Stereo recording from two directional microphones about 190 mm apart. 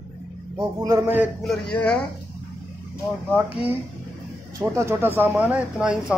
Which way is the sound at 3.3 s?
10° right (ahead or behind).